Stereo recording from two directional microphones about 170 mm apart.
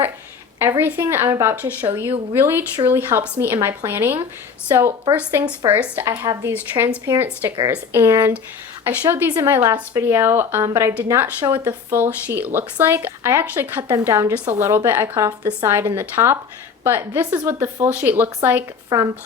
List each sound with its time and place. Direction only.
0.8 s speech: 10° right (ahead or behind)